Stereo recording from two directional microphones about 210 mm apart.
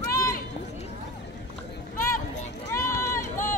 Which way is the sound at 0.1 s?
15° left (ahead or behind).